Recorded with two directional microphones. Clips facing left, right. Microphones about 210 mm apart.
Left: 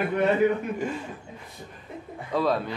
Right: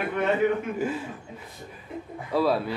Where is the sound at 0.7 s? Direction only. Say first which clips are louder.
Right 2 dB; 5° right (ahead or behind).